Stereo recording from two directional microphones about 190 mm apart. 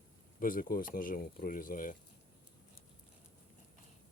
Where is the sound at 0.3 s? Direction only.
45° left (ahead or behind).